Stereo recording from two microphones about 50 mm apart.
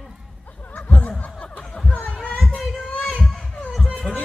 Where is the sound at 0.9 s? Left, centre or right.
Left.